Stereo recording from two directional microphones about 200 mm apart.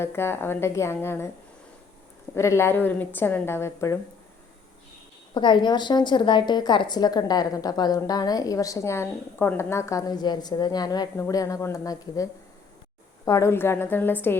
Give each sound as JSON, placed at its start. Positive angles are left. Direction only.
{"t": 0.0, "sound": "a woman's voice", "side_deg": 10}
{"t": 2.3, "sound": "a woman's voice", "side_deg": 15}
{"t": 5.3, "sound": "a woman's voice", "side_deg": 25}